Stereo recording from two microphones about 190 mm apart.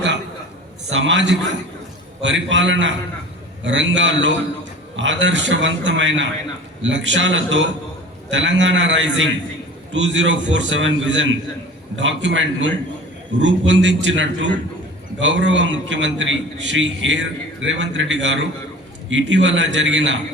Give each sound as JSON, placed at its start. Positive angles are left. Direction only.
{"t": 0.9, "sound": "a man's voice", "side_deg": -85}